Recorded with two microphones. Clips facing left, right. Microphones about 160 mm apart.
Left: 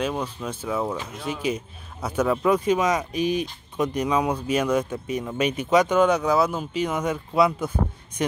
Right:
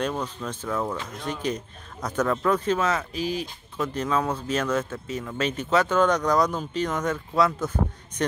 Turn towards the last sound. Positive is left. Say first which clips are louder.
# left 2 dB
turn(degrees=10)  # may be behind; listen again after turning